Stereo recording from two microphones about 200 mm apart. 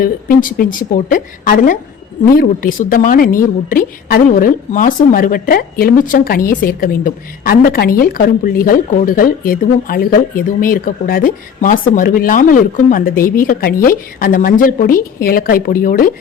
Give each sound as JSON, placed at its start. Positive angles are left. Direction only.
{"t": 0.0, "sound": "a woman's voice", "side_deg": 45}